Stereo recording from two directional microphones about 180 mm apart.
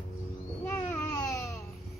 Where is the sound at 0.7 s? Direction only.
10° left (ahead or behind).